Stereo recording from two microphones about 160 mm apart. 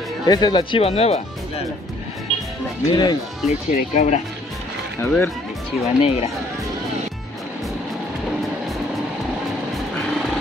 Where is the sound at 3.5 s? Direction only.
50° left (ahead or behind).